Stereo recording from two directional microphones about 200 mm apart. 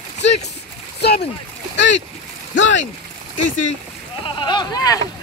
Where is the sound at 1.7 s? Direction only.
65° left (ahead or behind).